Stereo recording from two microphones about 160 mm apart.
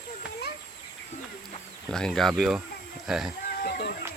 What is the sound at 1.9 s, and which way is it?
Speech, 5° left (ahead or behind).